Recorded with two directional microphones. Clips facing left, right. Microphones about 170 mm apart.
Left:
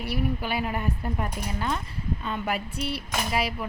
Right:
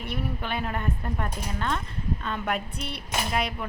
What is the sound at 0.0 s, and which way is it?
Speech, 5° left (ahead or behind).